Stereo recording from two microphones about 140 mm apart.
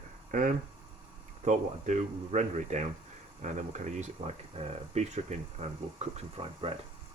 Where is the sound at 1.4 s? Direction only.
55° right (ahead or behind).